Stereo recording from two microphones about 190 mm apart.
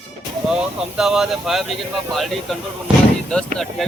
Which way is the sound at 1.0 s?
Centre (ahead or behind).